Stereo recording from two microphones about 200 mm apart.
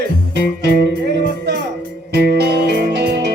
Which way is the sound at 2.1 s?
55° right (ahead or behind).